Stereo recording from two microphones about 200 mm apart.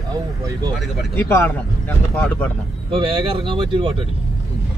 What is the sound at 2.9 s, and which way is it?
Speech, 25° right (ahead or behind).